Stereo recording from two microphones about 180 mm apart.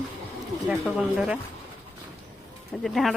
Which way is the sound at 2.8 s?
Centre (ahead or behind).